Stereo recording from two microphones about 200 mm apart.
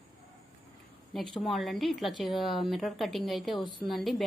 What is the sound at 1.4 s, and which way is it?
A woman's voice, centre (ahead or behind).